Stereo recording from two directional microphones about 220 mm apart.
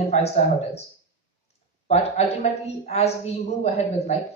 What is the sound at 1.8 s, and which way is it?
A man's voice, 30° left (ahead or behind).